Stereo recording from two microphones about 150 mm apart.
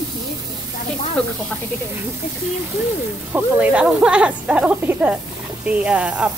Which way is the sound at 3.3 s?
10° right (ahead or behind).